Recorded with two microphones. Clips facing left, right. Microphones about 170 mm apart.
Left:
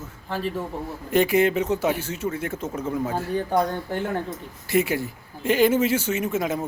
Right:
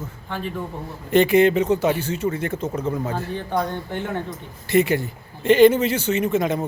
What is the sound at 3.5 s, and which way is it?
Speech, 40° left (ahead or behind).